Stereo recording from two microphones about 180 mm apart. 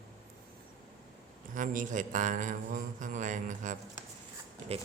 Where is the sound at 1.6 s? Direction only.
45° right (ahead or behind).